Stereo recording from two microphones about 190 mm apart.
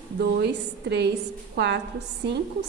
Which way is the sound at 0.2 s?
60° right (ahead or behind).